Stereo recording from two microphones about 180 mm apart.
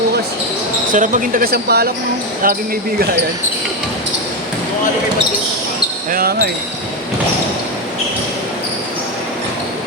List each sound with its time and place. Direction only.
0.9 s speech: 45° right (ahead or behind)
6.1 s speech: 55° right (ahead or behind)